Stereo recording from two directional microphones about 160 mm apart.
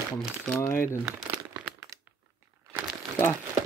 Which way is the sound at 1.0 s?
5° right (ahead or behind).